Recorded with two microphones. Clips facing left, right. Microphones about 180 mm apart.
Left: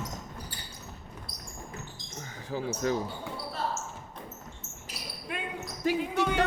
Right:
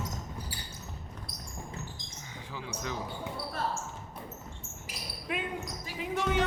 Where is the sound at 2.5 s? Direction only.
40° left (ahead or behind).